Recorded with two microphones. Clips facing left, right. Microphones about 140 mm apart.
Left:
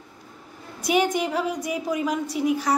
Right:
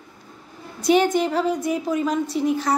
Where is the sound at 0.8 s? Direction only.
10° left (ahead or behind).